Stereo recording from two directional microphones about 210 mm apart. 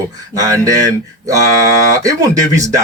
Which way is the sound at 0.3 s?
15° right (ahead or behind).